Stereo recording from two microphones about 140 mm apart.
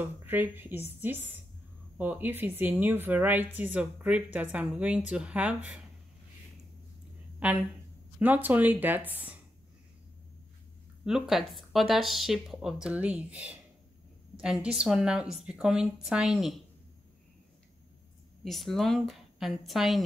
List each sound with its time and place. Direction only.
0.0 s a woman's voice: 15° right (ahead or behind)
7.3 s a woman's voice: 10° right (ahead or behind)
11.1 s a woman's voice: 5° right (ahead or behind)
18.4 s a woman's voice: centre (ahead or behind)